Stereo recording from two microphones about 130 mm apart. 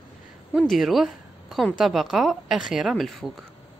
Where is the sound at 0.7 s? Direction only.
Centre (ahead or behind).